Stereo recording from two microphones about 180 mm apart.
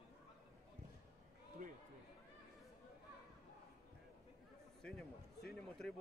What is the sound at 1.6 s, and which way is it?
Run, 50° right (ahead or behind).